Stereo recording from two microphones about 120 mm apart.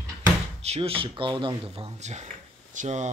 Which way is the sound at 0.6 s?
55° right (ahead or behind).